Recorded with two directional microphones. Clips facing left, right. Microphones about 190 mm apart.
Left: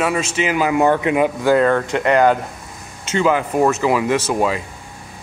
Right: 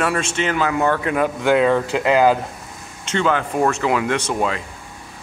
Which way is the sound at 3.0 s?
5° left (ahead or behind).